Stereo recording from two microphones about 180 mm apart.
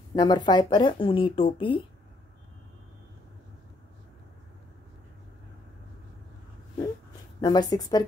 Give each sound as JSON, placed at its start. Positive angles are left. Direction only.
{"t": 0.1, "sound": "speech", "side_deg": 20}
{"t": 7.3, "sound": "speech", "side_deg": 20}